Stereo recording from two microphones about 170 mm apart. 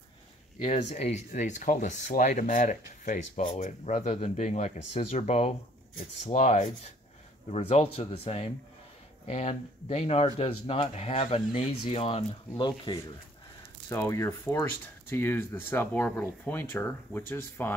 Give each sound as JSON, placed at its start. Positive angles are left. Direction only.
{"t": 0.7, "sound": "speech", "side_deg": 40}
{"t": 13.8, "sound": "speech", "side_deg": 15}